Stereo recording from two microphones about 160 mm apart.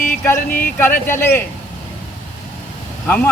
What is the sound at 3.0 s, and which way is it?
Speech, 10° left (ahead or behind).